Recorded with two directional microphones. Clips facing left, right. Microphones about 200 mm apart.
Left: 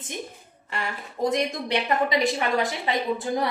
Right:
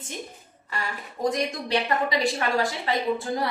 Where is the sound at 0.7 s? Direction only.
25° left (ahead or behind).